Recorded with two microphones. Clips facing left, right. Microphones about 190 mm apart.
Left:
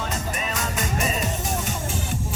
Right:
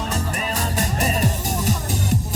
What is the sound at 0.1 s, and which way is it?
Music, 30° right (ahead or behind).